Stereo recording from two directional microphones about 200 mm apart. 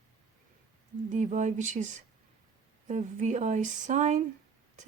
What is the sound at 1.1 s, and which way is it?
Speech, 35° right (ahead or behind).